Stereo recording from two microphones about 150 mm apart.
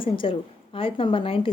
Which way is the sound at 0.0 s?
35° left (ahead or behind).